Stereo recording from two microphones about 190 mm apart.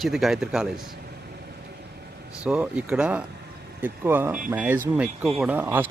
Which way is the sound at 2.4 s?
5° right (ahead or behind).